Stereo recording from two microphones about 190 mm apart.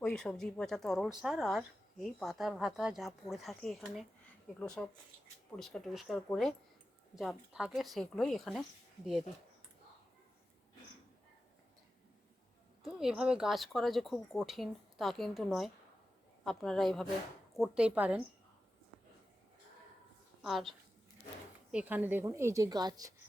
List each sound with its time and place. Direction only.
0.0 s a woman's voice: 5° left (ahead or behind)
12.8 s a woman's voice: 5° right (ahead or behind)
20.4 s a woman's voice: centre (ahead or behind); by 23.1 s 20° right (ahead or behind)